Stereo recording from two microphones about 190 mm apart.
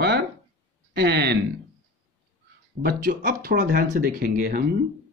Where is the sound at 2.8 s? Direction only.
55° right (ahead or behind).